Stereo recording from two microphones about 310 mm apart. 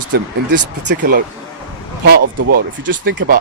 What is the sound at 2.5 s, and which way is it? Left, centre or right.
Speech, right.